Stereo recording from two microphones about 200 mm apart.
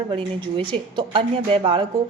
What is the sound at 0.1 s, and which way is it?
A woman's voice, 25° right (ahead or behind).